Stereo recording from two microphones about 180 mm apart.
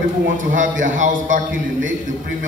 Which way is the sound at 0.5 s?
45° right (ahead or behind).